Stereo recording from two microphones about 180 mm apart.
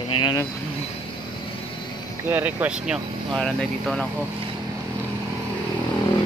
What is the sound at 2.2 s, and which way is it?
Speech, 10° right (ahead or behind).